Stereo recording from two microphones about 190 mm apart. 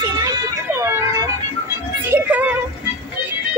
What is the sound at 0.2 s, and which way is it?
Vehicle, 20° right (ahead or behind).